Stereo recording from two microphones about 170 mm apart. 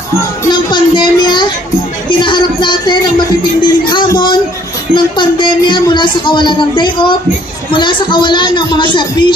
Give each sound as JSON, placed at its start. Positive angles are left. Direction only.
{"t": 0.5, "sound": "speech", "side_deg": 25}